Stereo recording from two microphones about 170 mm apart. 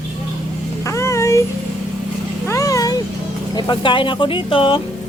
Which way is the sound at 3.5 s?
25° left (ahead or behind).